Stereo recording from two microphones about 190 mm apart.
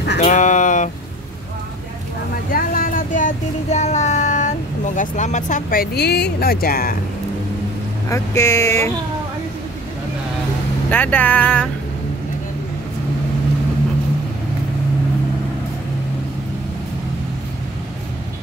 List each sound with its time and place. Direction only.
0.2 s a sound: 40° left (ahead or behind)
2.5 s child singing: 50° left (ahead or behind)
8.1 s speech: 15° left (ahead or behind)
10.9 s speech: 10° left (ahead or behind)